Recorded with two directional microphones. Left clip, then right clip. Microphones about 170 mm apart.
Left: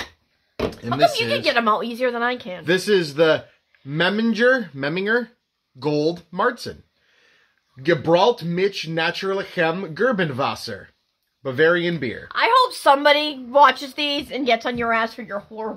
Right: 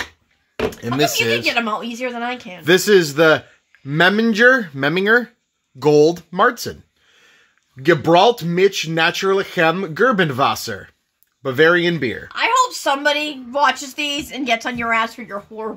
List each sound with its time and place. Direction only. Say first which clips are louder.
1.4 s speech: left 1 dB; 15° left (ahead or behind)
2.6 s a man's voice: right 6 dB; 45° right (ahead or behind)
7.8 s speech: right 4 dB; 40° right (ahead or behind)
12.3 s a woman's voice: even; 15° left (ahead or behind); by 15.7 s 10° right (ahead or behind)